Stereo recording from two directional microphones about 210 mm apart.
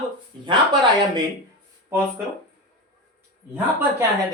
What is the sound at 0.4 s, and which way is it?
Speech, 20° right (ahead or behind).